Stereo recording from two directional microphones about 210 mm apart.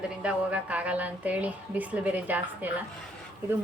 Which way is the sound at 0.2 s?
5° right (ahead or behind).